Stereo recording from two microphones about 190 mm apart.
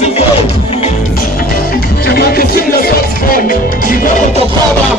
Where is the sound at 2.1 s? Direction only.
50° left (ahead or behind).